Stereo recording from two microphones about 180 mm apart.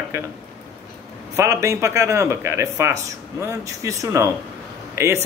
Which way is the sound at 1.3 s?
15° right (ahead or behind).